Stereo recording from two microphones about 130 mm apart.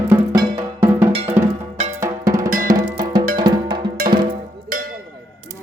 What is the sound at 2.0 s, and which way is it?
Drum, 25° right (ahead or behind).